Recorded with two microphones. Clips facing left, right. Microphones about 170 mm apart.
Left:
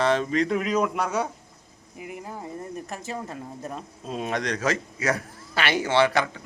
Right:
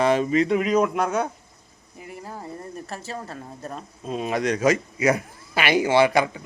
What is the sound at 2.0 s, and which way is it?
Speech, 15° left (ahead or behind).